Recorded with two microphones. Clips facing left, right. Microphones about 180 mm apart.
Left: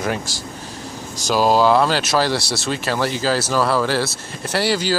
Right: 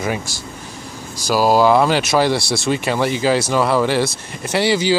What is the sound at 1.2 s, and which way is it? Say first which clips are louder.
Speech: right 2 dB; 10° right (ahead or behind).